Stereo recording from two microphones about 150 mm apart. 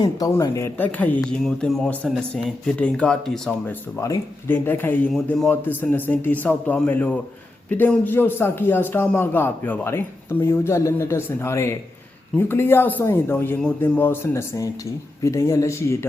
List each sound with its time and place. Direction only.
0.0 s a man's voice: 25° left (ahead or behind); by 3.8 s 5° left (ahead or behind)
4.0 s a man's voice: 20° left (ahead or behind)